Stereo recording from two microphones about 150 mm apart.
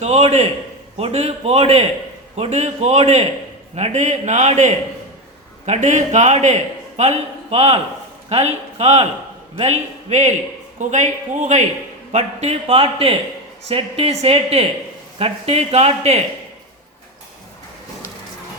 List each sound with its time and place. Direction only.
0.0 s a man's voice: 45° right (ahead or behind)